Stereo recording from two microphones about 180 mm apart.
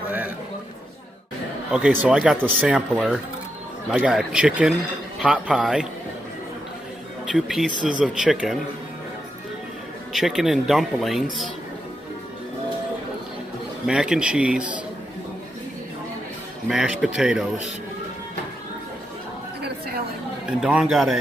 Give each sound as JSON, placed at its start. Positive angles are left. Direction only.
{"t": 1.7, "sound": "a man's voice", "side_deg": -5}
{"t": 7.3, "sound": "speech", "side_deg": -5}
{"t": 10.1, "sound": "speech", "side_deg": 0}
{"t": 13.8, "sound": "speech", "side_deg": -5}
{"t": 16.6, "sound": "speech", "side_deg": -5}
{"t": 20.6, "sound": "speech", "side_deg": -5}